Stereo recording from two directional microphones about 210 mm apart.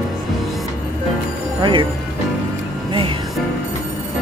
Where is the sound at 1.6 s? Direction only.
20° right (ahead or behind).